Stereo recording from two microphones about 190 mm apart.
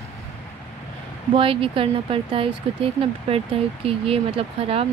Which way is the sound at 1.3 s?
30° right (ahead or behind).